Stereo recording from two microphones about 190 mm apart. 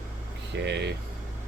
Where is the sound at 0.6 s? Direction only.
65° right (ahead or behind).